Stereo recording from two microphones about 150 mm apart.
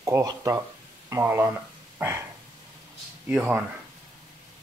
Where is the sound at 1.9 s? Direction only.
15° right (ahead or behind).